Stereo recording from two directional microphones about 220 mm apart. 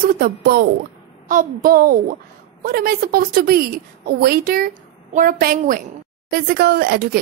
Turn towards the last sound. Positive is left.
turn(degrees=-45)  # may be behind; listen again after turning